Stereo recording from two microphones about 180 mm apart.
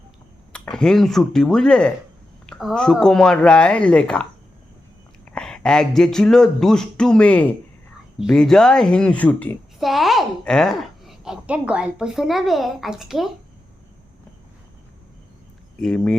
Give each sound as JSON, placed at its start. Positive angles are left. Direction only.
{"t": 0.5, "sound": "speech", "side_deg": 5}
{"t": 15.8, "sound": "speech", "side_deg": 5}